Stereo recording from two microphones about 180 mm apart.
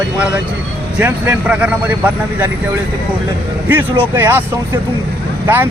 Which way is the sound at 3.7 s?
10° right (ahead or behind).